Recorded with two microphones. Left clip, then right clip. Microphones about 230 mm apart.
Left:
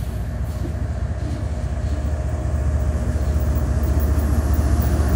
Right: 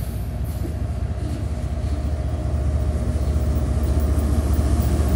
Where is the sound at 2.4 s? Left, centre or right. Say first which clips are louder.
Left 1 dB; centre.